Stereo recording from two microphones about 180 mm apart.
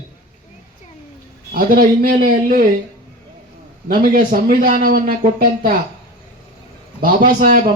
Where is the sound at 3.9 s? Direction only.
55° right (ahead or behind).